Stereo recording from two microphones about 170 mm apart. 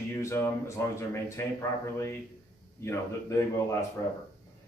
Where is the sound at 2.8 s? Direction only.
15° left (ahead or behind).